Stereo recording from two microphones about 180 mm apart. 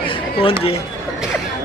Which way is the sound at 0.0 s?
30° left (ahead or behind).